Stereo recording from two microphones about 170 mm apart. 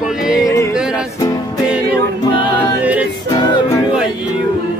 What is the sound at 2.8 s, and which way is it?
Music, 10° right (ahead or behind).